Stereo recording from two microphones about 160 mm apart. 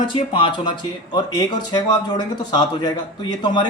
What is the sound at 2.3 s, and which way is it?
Speech, 25° left (ahead or behind).